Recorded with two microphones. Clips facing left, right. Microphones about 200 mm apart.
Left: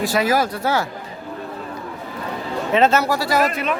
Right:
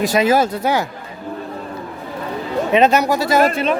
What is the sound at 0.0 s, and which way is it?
Speech, 20° right (ahead or behind).